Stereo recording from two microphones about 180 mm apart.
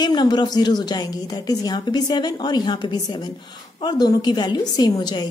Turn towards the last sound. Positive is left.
turn(degrees=20)  # may be behind; listen again after turning